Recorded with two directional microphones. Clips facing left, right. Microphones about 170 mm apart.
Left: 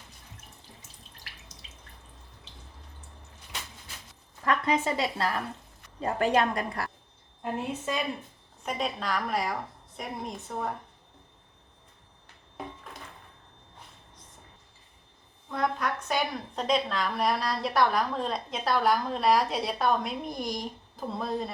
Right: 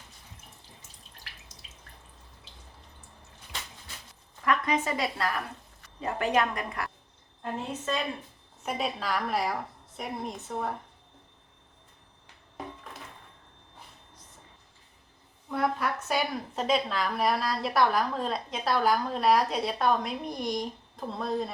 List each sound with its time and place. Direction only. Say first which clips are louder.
4.4 s a woman's voice: left 1 dB; 30° left (ahead or behind)
7.4 s a woman's voice: left 1 dB; 10° left (ahead or behind)
8.6 s a woman's voice: even; 5° right (ahead or behind)
15.4 s a woman's voice: right 1 dB; 5° right (ahead or behind)